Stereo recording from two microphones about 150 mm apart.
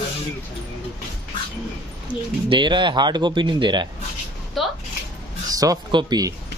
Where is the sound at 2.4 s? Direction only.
30° right (ahead or behind).